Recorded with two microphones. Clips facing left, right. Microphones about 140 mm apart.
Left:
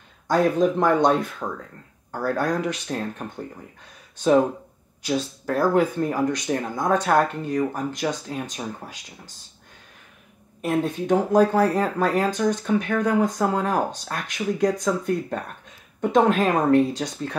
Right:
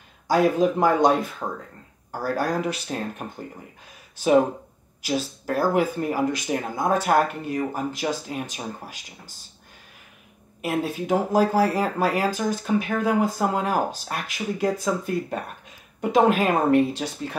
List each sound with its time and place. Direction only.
0.3 s speech: 5° right (ahead or behind)
1.4 s speech: 20° right (ahead or behind)
2.1 s speech: 5° right (ahead or behind)
5.0 s speech: 5° right (ahead or behind)
10.6 s speech: 5° right (ahead or behind)